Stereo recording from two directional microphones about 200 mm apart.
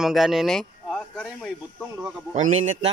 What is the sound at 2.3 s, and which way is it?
Speech, 35° right (ahead or behind).